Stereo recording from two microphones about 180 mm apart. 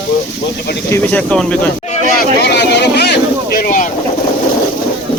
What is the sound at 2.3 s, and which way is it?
Speech, 65° left (ahead or behind).